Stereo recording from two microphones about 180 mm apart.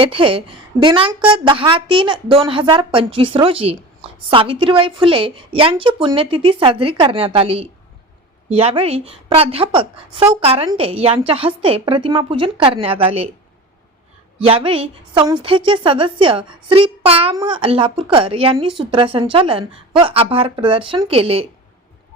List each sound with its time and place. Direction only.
0.0 s a woman's voice: 30° right (ahead or behind)
14.3 s a woman's voice: 30° right (ahead or behind)